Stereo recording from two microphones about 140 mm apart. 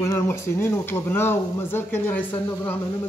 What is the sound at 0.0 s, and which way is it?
Speech, 20° left (ahead or behind).